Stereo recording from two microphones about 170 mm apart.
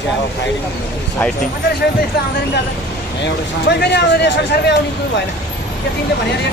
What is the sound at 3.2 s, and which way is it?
Speech, 80° left.